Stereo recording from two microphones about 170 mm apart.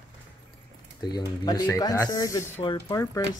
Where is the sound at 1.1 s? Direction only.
20° left (ahead or behind).